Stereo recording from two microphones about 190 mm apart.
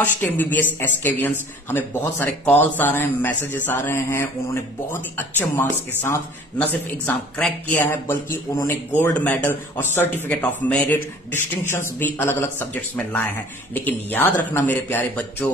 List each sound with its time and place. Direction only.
0.0 s speech: 10° left (ahead or behind)